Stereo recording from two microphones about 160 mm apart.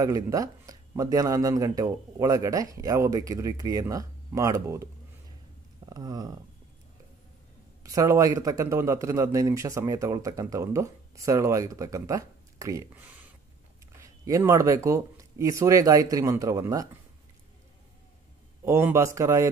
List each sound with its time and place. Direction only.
0.0 s a man's voice: 20° right (ahead or behind)
5.9 s a sound: 25° right (ahead or behind)
7.8 s a man's voice: 20° right (ahead or behind)
18.6 s a man's voice: 15° right (ahead or behind)